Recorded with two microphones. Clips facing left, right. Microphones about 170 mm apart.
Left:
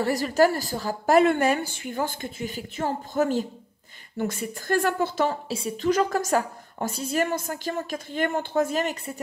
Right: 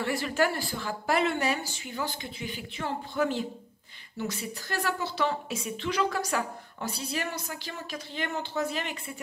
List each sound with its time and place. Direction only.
0.0 s a woman's voice: 40° left (ahead or behind)
5.5 s a woman's voice: 35° left (ahead or behind)